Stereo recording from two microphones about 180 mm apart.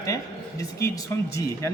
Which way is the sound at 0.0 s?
20° left (ahead or behind).